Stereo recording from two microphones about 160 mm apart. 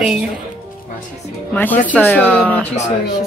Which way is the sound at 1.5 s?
10° left (ahead or behind).